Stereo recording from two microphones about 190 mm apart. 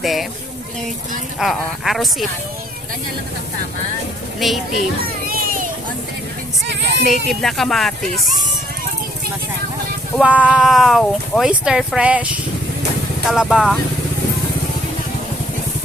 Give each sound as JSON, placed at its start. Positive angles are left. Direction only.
{"t": 0.0, "sound": "speech", "side_deg": 0}
{"t": 1.4, "sound": "speech", "side_deg": 0}
{"t": 4.4, "sound": "speech", "side_deg": 0}
{"t": 5.3, "sound": "a sound", "side_deg": -50}
{"t": 6.7, "sound": "speech", "side_deg": -65}
{"t": 7.3, "sound": "speech", "side_deg": 0}
{"t": 10.2, "sound": "speech", "side_deg": -5}